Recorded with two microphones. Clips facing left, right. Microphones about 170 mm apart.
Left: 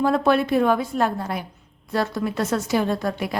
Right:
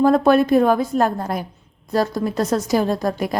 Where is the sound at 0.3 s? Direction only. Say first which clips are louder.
Right 4 dB; 45° right (ahead or behind).